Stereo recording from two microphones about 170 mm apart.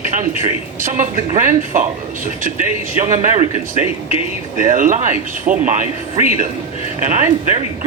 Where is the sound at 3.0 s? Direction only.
45° right (ahead or behind).